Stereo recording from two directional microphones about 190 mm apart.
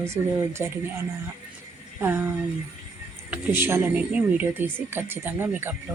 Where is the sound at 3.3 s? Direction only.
10° right (ahead or behind).